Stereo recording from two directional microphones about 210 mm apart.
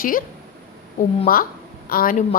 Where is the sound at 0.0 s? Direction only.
40° left (ahead or behind).